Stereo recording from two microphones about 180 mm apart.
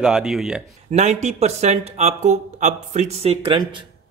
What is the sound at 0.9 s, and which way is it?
A man's voice, 40° right (ahead or behind).